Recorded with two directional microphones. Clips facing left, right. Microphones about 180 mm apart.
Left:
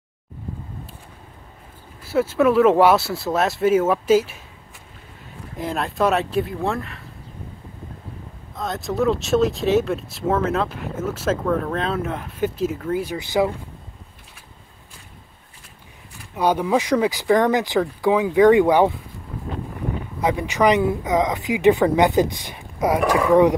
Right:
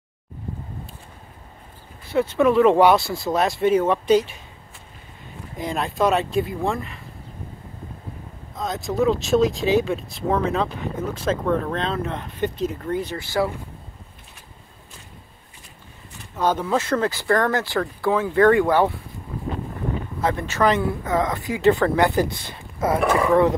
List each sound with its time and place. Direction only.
2.0 s speech: 5° left (ahead or behind)
5.6 s speech: centre (ahead or behind)
8.5 s speech: centre (ahead or behind); by 13.5 s 15° left (ahead or behind)
16.3 s speech: 10° left (ahead or behind)
20.2 s speech: 15° left (ahead or behind)
22.9 s speech: centre (ahead or behind)